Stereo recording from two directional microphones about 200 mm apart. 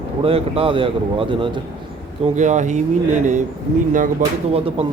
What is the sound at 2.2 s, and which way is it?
Speech, 35° right (ahead or behind).